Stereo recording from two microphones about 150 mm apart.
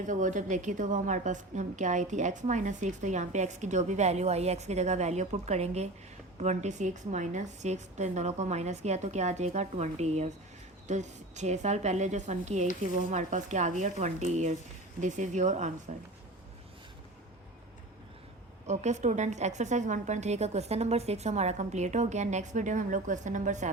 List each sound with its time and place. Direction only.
0.0 s a woman's voice: 55° right (ahead or behind)
18.6 s a woman's voice: 50° right (ahead or behind)